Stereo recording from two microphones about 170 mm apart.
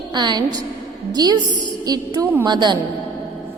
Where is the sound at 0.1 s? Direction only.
25° right (ahead or behind).